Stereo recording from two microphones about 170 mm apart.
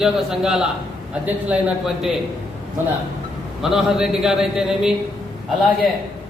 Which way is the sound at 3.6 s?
Centre (ahead or behind).